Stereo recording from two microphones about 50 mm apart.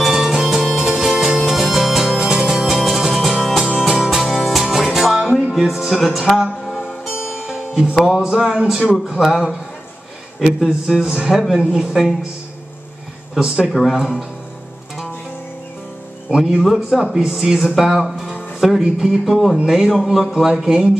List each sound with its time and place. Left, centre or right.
0.0 s music: centre
4.2 s music: centre
6.3 s speech: centre
6.7 s music: left
7.2 s music: left
7.4 s music: centre
7.9 s speech: centre
8.2 s speech: centre
13.7 s speech: centre
16.3 s speech: centre